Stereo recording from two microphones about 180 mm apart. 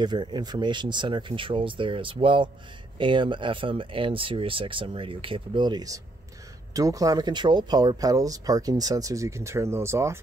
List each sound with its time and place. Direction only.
0.0 s speech: 25° right (ahead or behind)